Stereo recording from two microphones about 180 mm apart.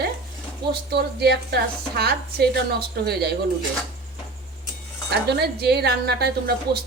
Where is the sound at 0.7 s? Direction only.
65° right (ahead or behind).